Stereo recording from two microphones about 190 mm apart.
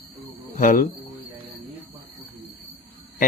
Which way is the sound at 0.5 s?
45° left (ahead or behind).